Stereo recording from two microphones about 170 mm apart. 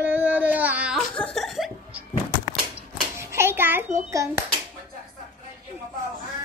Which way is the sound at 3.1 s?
15° right (ahead or behind).